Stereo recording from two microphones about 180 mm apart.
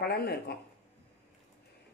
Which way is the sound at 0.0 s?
65° left (ahead or behind).